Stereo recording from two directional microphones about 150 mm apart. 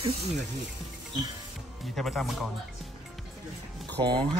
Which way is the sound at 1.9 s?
Centre (ahead or behind).